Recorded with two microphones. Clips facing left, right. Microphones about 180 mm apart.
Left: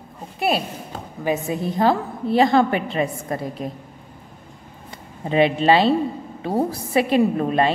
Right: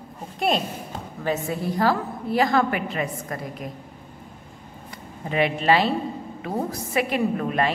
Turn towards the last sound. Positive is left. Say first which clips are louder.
# left 4 dB
turn(degrees=30)  # may be behind; listen again after turning